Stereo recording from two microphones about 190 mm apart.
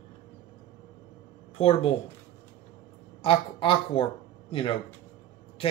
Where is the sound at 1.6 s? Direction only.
30° left (ahead or behind).